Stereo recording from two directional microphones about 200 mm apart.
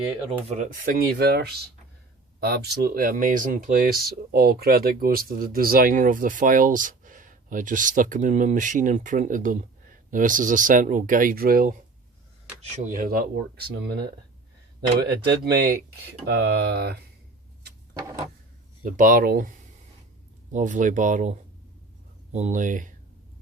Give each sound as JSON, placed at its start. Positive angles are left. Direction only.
{"t": 0.4, "sound": "speech", "side_deg": -35}
{"t": 12.7, "sound": "speech", "side_deg": -40}
{"t": 18.9, "sound": "speech", "side_deg": -40}